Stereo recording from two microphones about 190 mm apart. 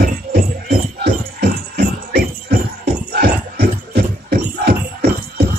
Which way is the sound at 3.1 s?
55° right (ahead or behind).